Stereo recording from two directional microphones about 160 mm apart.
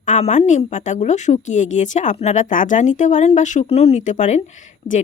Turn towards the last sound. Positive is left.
turn(degrees=50)  # may be behind; listen again after turning